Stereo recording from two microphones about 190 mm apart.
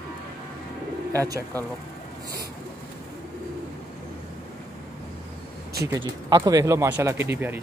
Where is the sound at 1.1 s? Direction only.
15° right (ahead or behind).